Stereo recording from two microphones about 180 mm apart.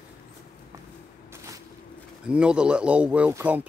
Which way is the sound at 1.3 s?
15° right (ahead or behind).